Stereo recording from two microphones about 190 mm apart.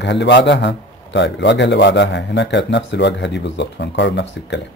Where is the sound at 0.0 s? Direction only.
65° left (ahead or behind).